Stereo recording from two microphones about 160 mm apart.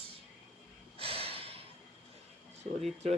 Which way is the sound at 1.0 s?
35° right (ahead or behind).